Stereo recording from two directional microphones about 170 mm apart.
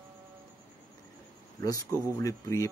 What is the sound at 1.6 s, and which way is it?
Speech, 20° left (ahead or behind).